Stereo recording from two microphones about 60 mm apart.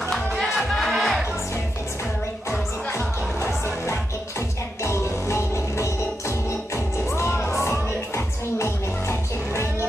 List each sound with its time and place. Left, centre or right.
0.1 s music: centre
4.8 s music: left
7.2 s music: left